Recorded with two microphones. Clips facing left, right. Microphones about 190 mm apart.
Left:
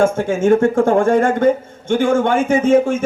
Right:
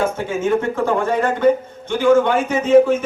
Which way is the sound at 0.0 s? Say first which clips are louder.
Left 5 dB; 50° left (ahead or behind).